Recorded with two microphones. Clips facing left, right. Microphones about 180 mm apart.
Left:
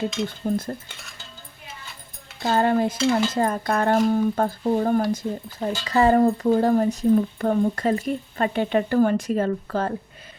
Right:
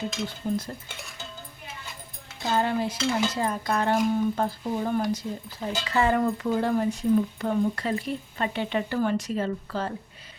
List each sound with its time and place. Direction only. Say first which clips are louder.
0.3 s speech: left 4 dB; 50° left (ahead or behind)
2.4 s speech: left 5 dB; 55° left (ahead or behind)